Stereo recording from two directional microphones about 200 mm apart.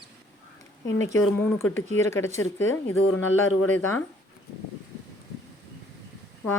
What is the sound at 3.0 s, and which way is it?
Speech, 90° left.